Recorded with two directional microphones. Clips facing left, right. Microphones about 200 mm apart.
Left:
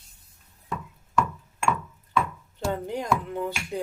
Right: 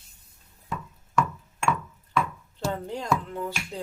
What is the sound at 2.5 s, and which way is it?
Speech, 15° left (ahead or behind).